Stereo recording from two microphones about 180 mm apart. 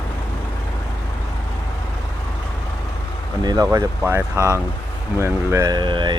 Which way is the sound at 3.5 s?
20° right (ahead or behind).